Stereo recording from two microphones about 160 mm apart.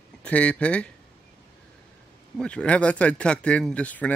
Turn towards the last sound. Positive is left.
turn(degrees=10)  # may be behind; listen again after turning